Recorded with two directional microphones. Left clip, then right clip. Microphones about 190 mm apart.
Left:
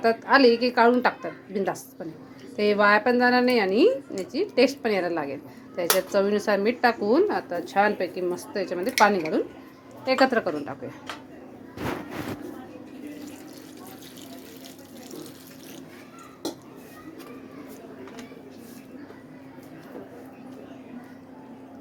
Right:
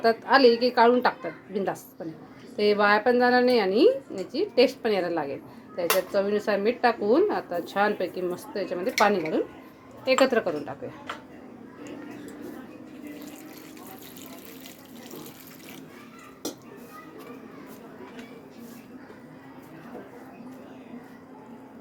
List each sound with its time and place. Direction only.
0.0 s a woman's voice: 5° left (ahead or behind)